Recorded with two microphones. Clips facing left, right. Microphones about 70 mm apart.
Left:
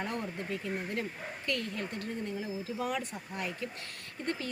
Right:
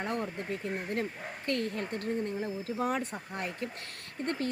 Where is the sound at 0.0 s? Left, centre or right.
Right.